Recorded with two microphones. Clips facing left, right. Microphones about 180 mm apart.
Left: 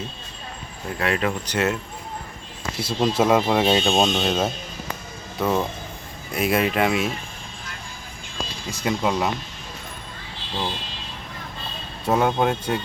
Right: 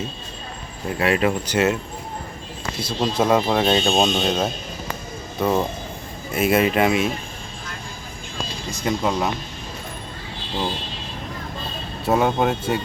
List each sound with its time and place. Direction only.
0.9 s speech: 10° right (ahead or behind)
2.8 s speech: 5° left (ahead or behind)
8.7 s speech: 5° left (ahead or behind)
12.0 s speech: centre (ahead or behind)